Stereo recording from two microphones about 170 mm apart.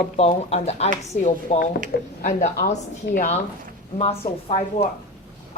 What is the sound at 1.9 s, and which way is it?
Speech, 65° left (ahead or behind).